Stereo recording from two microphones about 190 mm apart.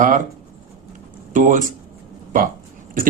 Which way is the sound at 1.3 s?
40° right (ahead or behind).